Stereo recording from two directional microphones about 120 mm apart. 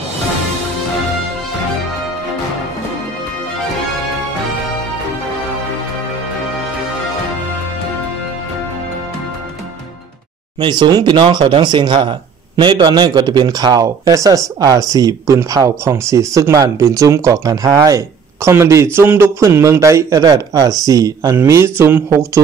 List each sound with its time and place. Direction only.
10.6 s speech: 40° right (ahead or behind); by 22.4 s 20° right (ahead or behind)